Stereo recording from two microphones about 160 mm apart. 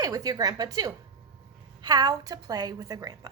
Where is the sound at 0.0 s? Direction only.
25° right (ahead or behind).